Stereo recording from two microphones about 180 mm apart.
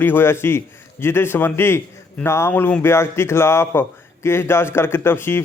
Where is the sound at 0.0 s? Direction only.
10° left (ahead or behind).